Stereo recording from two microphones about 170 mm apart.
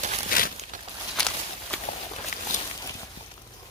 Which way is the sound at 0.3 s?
55° left (ahead or behind).